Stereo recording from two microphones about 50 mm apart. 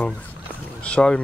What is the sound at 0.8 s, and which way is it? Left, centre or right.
Speech, left.